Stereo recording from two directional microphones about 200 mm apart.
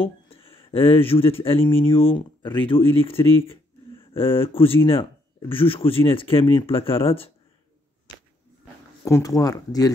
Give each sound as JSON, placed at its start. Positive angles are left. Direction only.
{"t": 0.0, "sound": "speech", "side_deg": 25}
{"t": 4.4, "sound": "speech", "side_deg": 25}
{"t": 9.0, "sound": "speech", "side_deg": 15}